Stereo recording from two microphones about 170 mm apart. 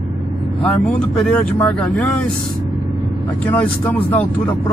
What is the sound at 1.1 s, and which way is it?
Speech, centre (ahead or behind).